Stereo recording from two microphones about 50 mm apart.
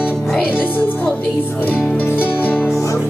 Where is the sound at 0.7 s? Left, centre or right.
Left.